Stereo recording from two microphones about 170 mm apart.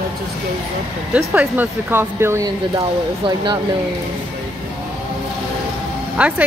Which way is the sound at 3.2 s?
30° right (ahead or behind).